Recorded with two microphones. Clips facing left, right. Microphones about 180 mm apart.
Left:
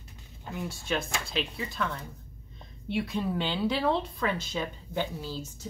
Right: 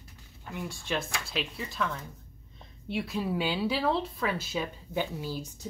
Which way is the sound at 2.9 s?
Centre (ahead or behind).